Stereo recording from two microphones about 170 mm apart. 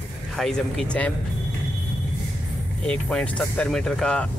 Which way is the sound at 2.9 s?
5° left (ahead or behind).